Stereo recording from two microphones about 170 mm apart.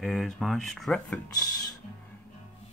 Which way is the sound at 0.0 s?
Centre (ahead or behind).